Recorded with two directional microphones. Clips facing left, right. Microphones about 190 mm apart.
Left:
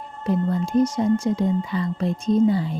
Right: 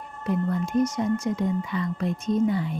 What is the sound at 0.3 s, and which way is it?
Speech, 25° left (ahead or behind).